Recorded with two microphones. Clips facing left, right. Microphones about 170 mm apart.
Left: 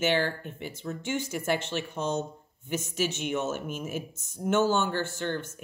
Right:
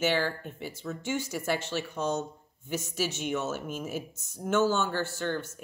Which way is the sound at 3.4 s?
50° left (ahead or behind).